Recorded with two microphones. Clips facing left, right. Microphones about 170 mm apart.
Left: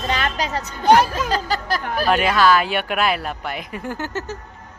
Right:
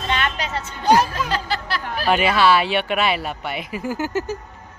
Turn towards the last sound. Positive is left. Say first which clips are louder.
# right 4 dB
turn(degrees=-10)  # may be behind; listen again after turning